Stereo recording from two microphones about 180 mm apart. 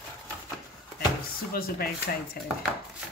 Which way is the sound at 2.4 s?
55° left (ahead or behind).